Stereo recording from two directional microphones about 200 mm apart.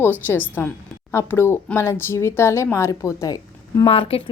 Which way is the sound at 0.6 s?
10° left (ahead or behind).